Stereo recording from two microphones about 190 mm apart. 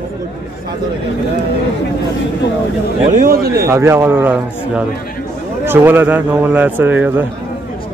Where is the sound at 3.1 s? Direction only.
50° right (ahead or behind).